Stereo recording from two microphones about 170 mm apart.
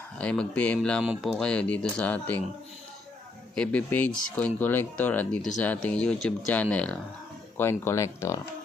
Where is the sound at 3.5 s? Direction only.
10° left (ahead or behind).